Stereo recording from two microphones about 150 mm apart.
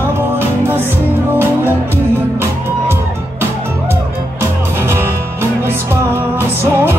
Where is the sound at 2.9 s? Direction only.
15° right (ahead or behind).